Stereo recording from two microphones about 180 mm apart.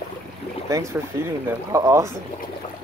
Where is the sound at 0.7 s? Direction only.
20° right (ahead or behind).